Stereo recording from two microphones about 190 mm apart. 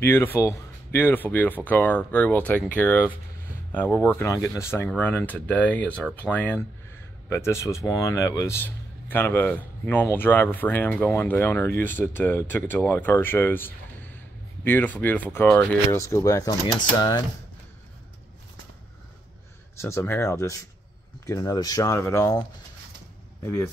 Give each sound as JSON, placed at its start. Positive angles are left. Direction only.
{"t": 0.0, "sound": "speech", "side_deg": 10}
{"t": 19.8, "sound": "speech", "side_deg": 15}
{"t": 23.4, "sound": "speech", "side_deg": 15}